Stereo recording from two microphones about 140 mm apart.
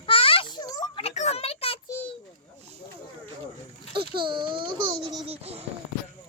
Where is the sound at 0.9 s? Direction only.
50° left (ahead or behind).